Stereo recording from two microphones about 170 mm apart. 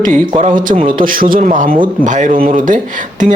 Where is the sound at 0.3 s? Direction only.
50° right (ahead or behind).